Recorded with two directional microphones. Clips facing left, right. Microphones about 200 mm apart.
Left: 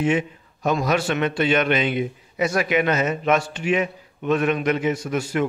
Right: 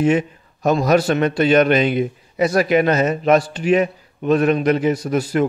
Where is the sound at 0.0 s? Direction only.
40° right (ahead or behind).